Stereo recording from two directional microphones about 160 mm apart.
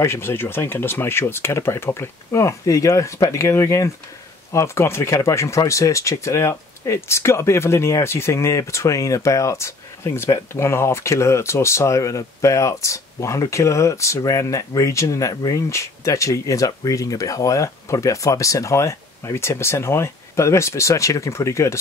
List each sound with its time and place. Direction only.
0.0 s speech: 15° left (ahead or behind)